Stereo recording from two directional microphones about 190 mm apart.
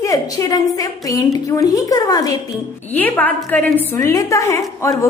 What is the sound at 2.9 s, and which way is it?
A woman's voice, 10° left (ahead or behind).